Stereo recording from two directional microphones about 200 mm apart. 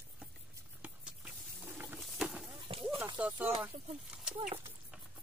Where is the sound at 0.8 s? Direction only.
5° right (ahead or behind).